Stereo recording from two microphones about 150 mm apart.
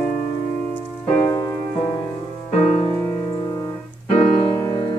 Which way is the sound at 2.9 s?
30° left (ahead or behind).